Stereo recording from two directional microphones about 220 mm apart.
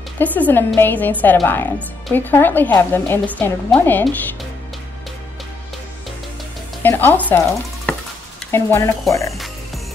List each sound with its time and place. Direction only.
0.2 s speech: 10° left (ahead or behind)
6.8 s speech: 10° left (ahead or behind)